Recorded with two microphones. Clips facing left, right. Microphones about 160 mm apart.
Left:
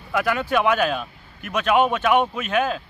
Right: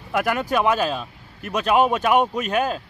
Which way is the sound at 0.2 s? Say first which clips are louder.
Even; 45° right (ahead or behind).